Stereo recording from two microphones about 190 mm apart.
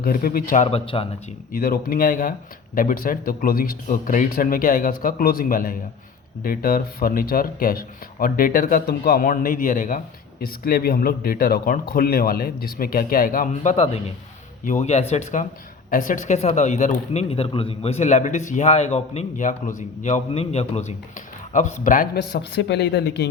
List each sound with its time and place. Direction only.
0.0 s speech: 50° left (ahead or behind); by 1.0 s 30° left (ahead or behind)
1.5 s speech: 50° left (ahead or behind)